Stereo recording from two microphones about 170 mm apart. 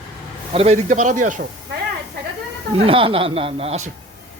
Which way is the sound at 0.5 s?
40° right (ahead or behind).